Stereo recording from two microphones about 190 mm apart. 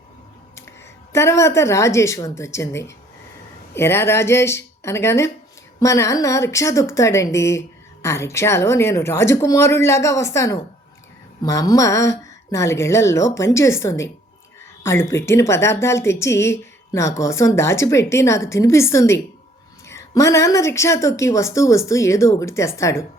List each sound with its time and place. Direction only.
1.1 s speech: 15° left (ahead or behind)